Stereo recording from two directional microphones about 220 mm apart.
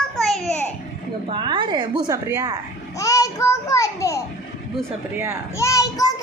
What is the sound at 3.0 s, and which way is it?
A child's voice, 15° left (ahead or behind).